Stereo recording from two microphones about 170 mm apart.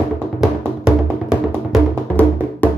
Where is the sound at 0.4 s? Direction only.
Centre (ahead or behind).